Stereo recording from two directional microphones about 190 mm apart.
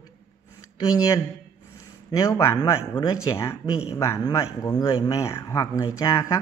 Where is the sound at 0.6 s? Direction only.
20° left (ahead or behind).